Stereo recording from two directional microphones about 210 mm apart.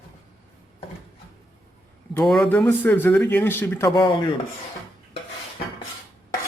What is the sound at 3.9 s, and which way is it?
Rub, 20° left (ahead or behind).